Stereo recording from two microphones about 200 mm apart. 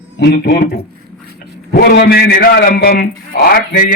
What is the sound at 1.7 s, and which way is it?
A man's voice, 50° left (ahead or behind).